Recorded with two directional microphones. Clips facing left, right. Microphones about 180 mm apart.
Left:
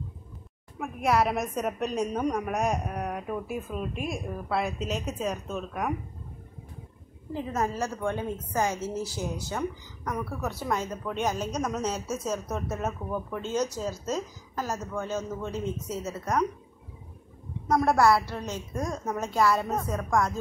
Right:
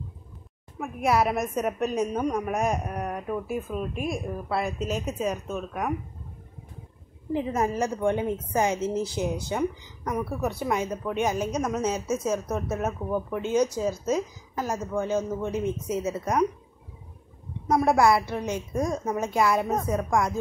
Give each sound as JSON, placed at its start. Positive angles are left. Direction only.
{"t": 0.7, "sound": "a woman's voice", "side_deg": -5}
{"t": 7.3, "sound": "a woman's voice", "side_deg": -15}
{"t": 17.6, "sound": "speech", "side_deg": -10}